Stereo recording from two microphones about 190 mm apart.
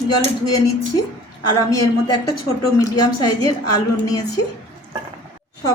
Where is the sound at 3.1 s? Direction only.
20° left (ahead or behind).